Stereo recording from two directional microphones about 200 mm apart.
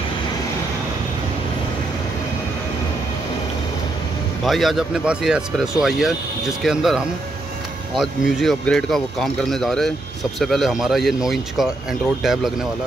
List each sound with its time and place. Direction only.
4.5 s speech: centre (ahead or behind)
8.0 s speech: centre (ahead or behind)